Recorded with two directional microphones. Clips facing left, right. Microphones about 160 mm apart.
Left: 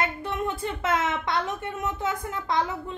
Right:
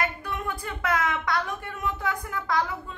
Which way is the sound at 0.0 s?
25° left (ahead or behind).